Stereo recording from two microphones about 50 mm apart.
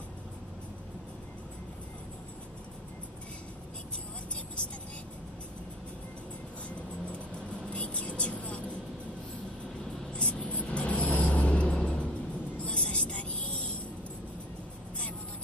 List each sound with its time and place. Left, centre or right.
7.7 s vehicle: left
10.1 s vehicle: left
12.5 s music: left